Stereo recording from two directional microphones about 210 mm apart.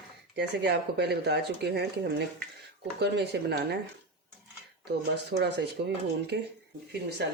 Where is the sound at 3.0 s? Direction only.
50° right (ahead or behind).